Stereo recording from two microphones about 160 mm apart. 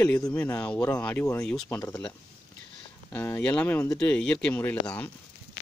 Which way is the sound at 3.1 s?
10° left (ahead or behind).